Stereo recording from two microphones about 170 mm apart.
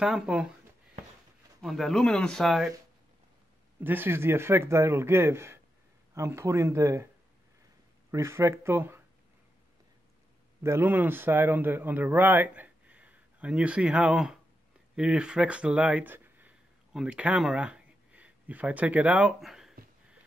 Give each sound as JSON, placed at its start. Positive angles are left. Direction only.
{"t": 0.0, "sound": "speech", "side_deg": -5}
{"t": 1.6, "sound": "speech", "side_deg": 0}
{"t": 3.8, "sound": "a man's voice", "side_deg": -10}
{"t": 8.1, "sound": "a man's voice", "side_deg": -15}
{"t": 10.6, "sound": "a man's voice", "side_deg": -15}